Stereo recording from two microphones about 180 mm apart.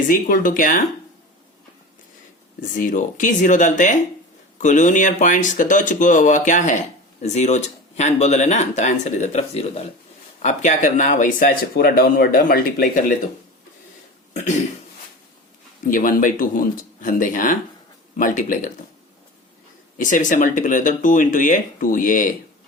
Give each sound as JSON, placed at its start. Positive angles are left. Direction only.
{"t": 0.1, "sound": "speech", "side_deg": 50}
{"t": 2.7, "sound": "speech", "side_deg": 45}
{"t": 15.8, "sound": "speech", "side_deg": 50}
{"t": 20.0, "sound": "speech", "side_deg": 45}